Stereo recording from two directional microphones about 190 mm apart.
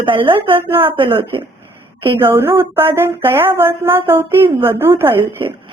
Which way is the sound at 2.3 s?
10° right (ahead or behind).